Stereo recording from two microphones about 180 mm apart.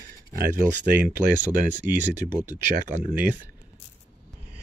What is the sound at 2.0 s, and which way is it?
Speech, 45° right (ahead or behind).